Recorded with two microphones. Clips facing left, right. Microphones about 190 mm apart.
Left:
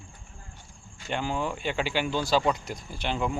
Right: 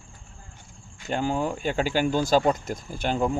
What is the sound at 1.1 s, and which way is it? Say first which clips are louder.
Speech: right 4 dB; 40° right (ahead or behind).